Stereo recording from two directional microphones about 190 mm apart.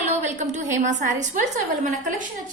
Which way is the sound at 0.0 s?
35° right (ahead or behind).